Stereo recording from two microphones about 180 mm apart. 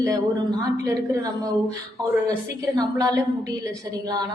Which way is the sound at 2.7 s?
20° right (ahead or behind).